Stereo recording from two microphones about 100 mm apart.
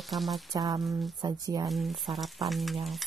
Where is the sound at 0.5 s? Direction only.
40° right (ahead or behind).